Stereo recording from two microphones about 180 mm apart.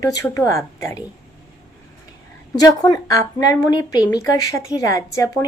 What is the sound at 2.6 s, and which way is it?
A woman's voice, 20° left (ahead or behind).